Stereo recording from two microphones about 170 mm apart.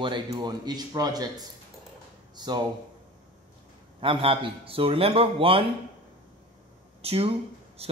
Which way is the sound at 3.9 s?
30° right (ahead or behind).